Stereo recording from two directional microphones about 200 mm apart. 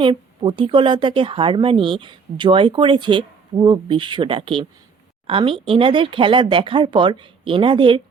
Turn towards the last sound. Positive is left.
turn(degrees=-25)  # may be behind; listen again after turning